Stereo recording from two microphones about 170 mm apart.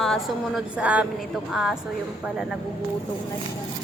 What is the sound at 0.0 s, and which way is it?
A woman's voice, centre (ahead or behind).